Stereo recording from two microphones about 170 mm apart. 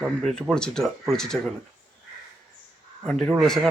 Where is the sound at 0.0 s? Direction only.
Centre (ahead or behind).